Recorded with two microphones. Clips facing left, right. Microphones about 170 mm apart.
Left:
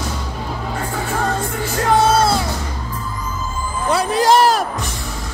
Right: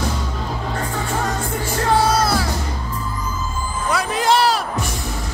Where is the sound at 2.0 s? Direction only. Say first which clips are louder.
Left 3 dB; 25° left (ahead or behind).